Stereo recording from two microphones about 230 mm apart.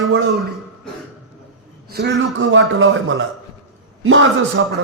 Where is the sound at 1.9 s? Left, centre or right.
Right.